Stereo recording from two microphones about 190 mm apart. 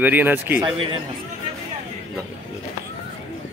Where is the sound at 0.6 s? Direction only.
25° right (ahead or behind).